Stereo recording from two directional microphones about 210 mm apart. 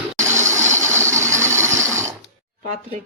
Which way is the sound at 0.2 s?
15° right (ahead or behind).